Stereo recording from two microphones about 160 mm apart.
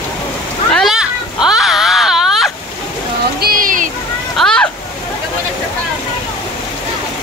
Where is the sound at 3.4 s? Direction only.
60° right (ahead or behind).